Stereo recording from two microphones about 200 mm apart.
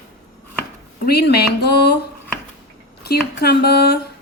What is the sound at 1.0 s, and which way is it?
A woman's voice, 55° left (ahead or behind).